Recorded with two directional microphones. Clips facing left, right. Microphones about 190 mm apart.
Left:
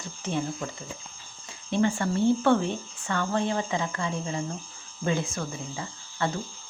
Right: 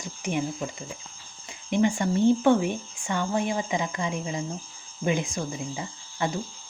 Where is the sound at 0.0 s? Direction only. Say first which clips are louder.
Right 1 dB; 15° right (ahead or behind).